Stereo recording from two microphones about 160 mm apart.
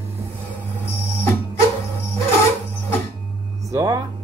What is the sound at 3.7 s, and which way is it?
Speech, 20° right (ahead or behind).